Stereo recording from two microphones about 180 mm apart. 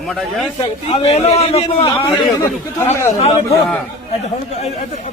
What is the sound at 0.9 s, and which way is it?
A man's voice, 35° left (ahead or behind).